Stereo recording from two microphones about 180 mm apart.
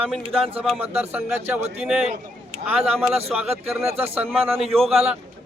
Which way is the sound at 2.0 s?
40° right (ahead or behind).